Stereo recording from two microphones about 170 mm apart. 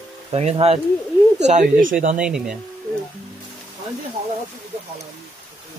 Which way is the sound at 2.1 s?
5° right (ahead or behind).